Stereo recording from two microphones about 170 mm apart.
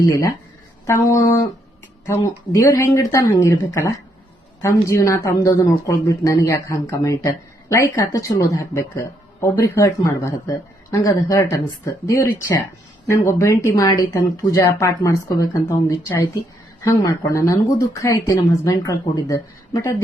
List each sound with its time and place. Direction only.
0.0 s speech: 20° left (ahead or behind)
2.5 s speech: 20° left (ahead or behind)